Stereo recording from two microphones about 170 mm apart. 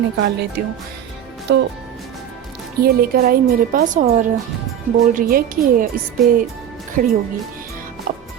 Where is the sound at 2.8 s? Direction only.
65° right (ahead or behind).